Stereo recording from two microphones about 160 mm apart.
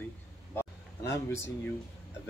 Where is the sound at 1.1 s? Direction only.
15° left (ahead or behind).